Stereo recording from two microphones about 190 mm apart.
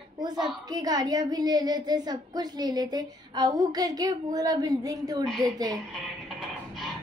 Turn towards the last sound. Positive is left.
turn(degrees=0)  # may be behind; listen again after turning